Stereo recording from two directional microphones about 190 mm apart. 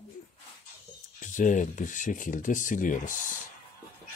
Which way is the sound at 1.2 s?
40° left (ahead or behind).